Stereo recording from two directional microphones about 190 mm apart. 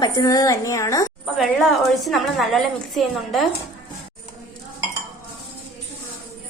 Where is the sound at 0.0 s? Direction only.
20° left (ahead or behind).